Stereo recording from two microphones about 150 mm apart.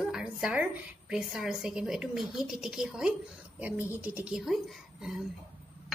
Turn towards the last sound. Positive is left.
turn(degrees=-5)  # may be behind; listen again after turning